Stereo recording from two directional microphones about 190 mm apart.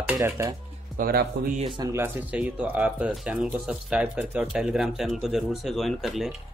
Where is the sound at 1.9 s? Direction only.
10° right (ahead or behind).